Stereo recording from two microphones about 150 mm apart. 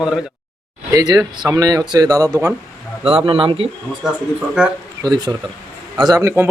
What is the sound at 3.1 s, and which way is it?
Speech, 35° right (ahead or behind).